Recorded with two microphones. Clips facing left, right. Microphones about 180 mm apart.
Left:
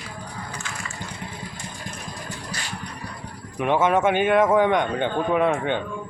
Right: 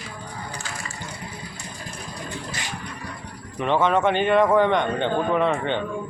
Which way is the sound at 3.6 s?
10° left (ahead or behind).